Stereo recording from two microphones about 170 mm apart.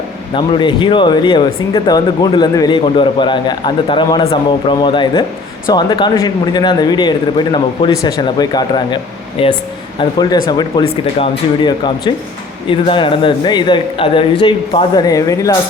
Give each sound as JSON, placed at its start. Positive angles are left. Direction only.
{"t": 0.3, "sound": "speech", "side_deg": 30}